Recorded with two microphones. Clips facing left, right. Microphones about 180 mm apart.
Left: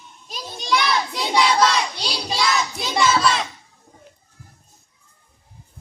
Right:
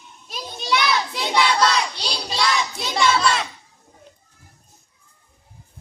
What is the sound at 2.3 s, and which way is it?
Music, centre (ahead or behind).